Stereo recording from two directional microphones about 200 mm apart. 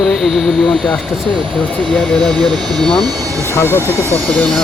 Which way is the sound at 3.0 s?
15° right (ahead or behind).